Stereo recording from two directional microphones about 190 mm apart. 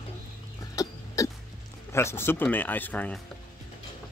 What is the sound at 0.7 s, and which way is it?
Cough, 15° left (ahead or behind).